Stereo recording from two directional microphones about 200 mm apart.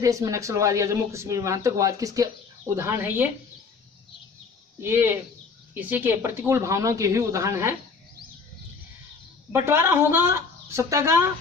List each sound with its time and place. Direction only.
0.0 s speech: 15° right (ahead or behind)
4.8 s speech: 10° right (ahead or behind)
9.5 s speech: 10° right (ahead or behind)